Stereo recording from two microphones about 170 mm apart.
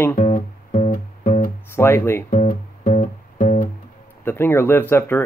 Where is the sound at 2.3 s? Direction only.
45° left (ahead or behind).